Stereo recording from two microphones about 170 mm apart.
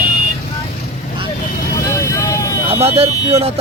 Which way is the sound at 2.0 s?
15° left (ahead or behind).